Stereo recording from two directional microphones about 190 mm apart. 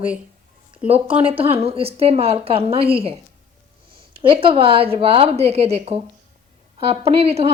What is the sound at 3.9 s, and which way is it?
A woman's voice, 30° right (ahead or behind).